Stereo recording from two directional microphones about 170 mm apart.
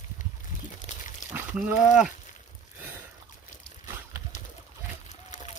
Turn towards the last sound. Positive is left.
turn(degrees=45)  # may be behind; listen again after turning